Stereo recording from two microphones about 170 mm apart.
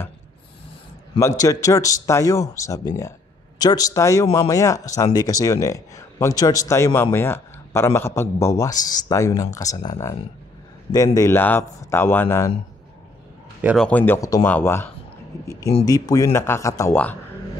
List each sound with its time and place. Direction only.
1.2 s speech: 20° left (ahead or behind)
11.1 s speech: 15° left (ahead or behind)
13.7 s speech: 10° left (ahead or behind)